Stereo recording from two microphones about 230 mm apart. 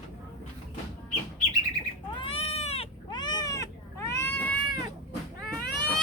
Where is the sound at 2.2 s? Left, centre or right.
Left.